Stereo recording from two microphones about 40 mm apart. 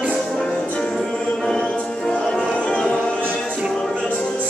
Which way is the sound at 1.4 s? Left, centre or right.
Centre.